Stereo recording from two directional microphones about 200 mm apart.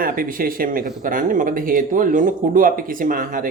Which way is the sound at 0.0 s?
45° right (ahead or behind).